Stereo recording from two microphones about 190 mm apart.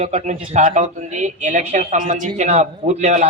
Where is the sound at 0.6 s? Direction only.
45° right (ahead or behind).